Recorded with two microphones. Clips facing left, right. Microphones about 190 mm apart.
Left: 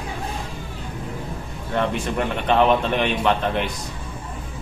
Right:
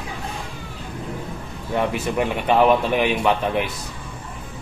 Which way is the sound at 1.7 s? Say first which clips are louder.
Right 1 dB; 10° right (ahead or behind).